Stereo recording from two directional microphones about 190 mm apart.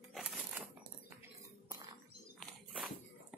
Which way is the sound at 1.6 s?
25° right (ahead or behind).